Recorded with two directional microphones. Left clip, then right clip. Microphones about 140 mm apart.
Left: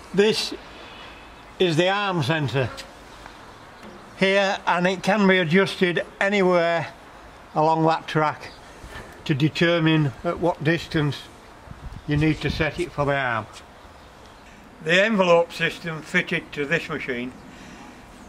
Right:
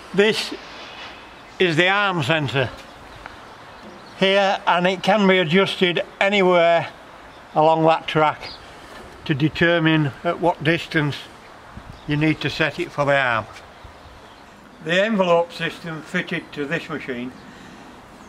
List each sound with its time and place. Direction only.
0.1 s speech: 20° right (ahead or behind)
1.6 s speech: 20° right (ahead or behind)
4.2 s speech: 20° right (ahead or behind)
9.2 s speech: 10° right (ahead or behind); by 13.5 s 50° right (ahead or behind)
14.9 s speech: 5° left (ahead or behind)